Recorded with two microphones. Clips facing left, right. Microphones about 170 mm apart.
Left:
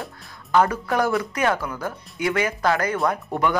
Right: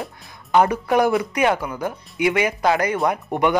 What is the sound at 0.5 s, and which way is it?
Speech, 15° right (ahead or behind).